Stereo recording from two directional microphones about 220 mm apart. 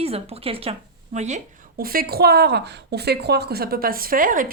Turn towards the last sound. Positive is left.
turn(degrees=-40)  # may be behind; listen again after turning